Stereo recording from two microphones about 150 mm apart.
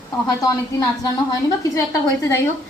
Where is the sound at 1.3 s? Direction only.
20° left (ahead or behind).